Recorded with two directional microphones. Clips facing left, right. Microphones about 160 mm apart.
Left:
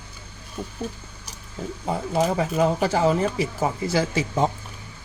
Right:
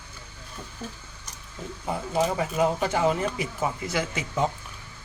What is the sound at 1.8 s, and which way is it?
Speech, 30° left (ahead or behind).